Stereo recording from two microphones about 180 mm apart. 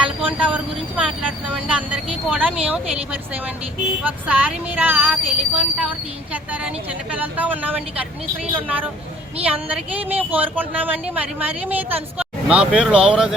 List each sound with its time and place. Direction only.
0.2 s speech: 10° right (ahead or behind)
9.4 s speech: 5° right (ahead or behind)